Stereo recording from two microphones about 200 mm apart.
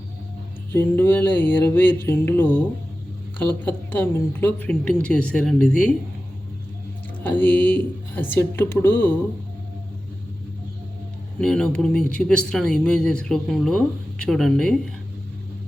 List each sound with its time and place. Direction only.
0.7 s speech: 10° left (ahead or behind)
7.3 s speech: 10° left (ahead or behind)
11.3 s speech: 5° left (ahead or behind)